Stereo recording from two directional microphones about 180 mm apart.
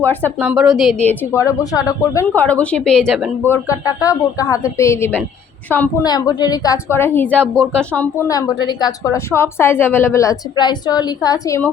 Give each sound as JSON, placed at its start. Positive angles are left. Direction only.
{"t": 0.0, "sound": "a woman's voice", "side_deg": 10}
{"t": 0.3, "sound": "a woman's voice", "side_deg": -5}
{"t": 1.0, "sound": "a woman's voice", "side_deg": 15}
{"t": 3.4, "sound": "a woman's voice", "side_deg": 15}
{"t": 6.0, "sound": "a woman's voice", "side_deg": 20}
{"t": 8.3, "sound": "a woman's voice", "side_deg": 20}